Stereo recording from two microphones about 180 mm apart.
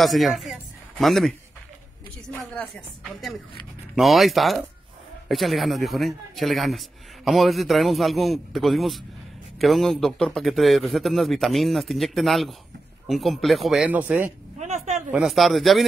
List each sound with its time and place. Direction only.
0.0 s speech: centre (ahead or behind)
2.5 s speech: 5° left (ahead or behind)
14.6 s a sound: 40° right (ahead or behind)
15.0 s speech: 5° right (ahead or behind)